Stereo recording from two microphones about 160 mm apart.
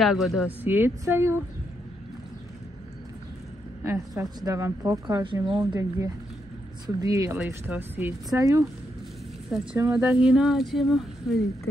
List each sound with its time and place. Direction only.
0.0 s speech: centre (ahead or behind)
3.8 s a woman's voice: 20° right (ahead or behind)
7.3 s a woman's voice: 10° right (ahead or behind)
9.8 s a woman's voice: 20° right (ahead or behind)
10.2 s speech: centre (ahead or behind)